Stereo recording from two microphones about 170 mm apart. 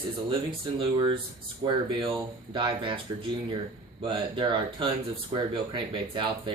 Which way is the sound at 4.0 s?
30° right (ahead or behind).